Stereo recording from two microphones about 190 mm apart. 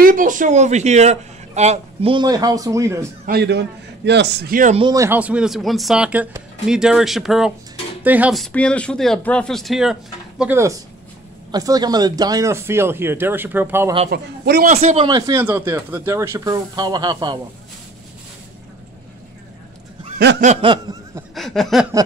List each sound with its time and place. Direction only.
0.0 s speech: 45° right (ahead or behind); by 3.1 s 15° right (ahead or behind)
3.3 s a man's voice: 60° right (ahead or behind)
4.7 s speech: 20° right (ahead or behind); by 9.9 s centre (ahead or behind)
10.4 s speech: 10° right (ahead or behind)
14.1 s a man's voice: 55° right (ahead or behind)
14.7 s speech: 35° right (ahead or behind)
15.1 s speech: 15° right (ahead or behind)
20.6 s a sound: 20° right (ahead or behind)
21.4 s speech: centre (ahead or behind)